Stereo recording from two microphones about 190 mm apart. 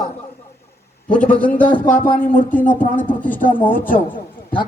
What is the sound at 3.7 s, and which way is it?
Speech, 45° left (ahead or behind).